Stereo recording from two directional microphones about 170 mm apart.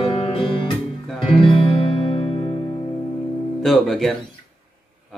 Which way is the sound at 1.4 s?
30° left (ahead or behind).